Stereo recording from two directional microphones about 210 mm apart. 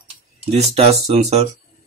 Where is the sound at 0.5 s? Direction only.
30° right (ahead or behind).